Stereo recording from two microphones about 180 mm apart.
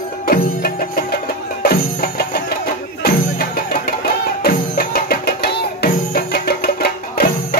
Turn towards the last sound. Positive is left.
turn(degrees=55)  # may be behind; listen again after turning